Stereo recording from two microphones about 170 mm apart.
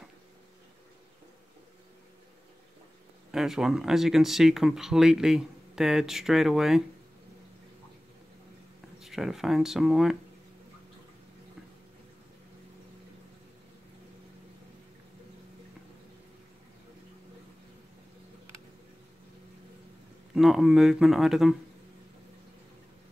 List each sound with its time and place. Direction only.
3.3 s speech: 5° right (ahead or behind)
9.0 s speech: centre (ahead or behind)
20.3 s speech: centre (ahead or behind)